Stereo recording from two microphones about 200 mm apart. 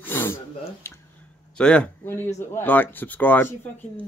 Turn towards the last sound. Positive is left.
turn(degrees=10)  # may be behind; listen again after turning